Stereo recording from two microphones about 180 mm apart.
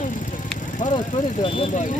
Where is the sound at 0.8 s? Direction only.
45° left (ahead or behind).